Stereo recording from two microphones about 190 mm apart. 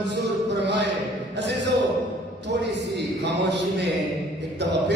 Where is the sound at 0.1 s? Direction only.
65° right (ahead or behind).